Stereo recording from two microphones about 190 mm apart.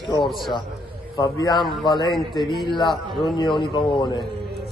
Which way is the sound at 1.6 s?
Centre (ahead or behind).